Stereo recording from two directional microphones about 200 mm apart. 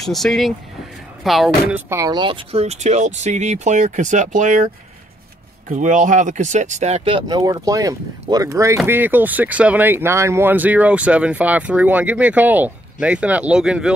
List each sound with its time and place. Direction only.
0.0 s speech: centre (ahead or behind)
1.9 s speech: 15° right (ahead or behind); by 4.6 s 40° right (ahead or behind)
5.7 s speech: 40° right (ahead or behind); by 13.9 s 5° right (ahead or behind)